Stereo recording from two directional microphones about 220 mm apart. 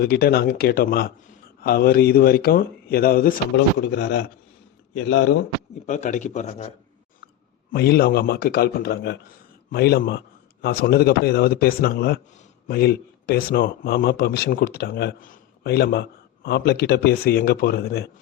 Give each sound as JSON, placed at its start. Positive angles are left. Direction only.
{"t": 0.0, "sound": "speech", "side_deg": 45}
{"t": 5.8, "sound": "speech", "side_deg": 35}
{"t": 7.7, "sound": "speech", "side_deg": 45}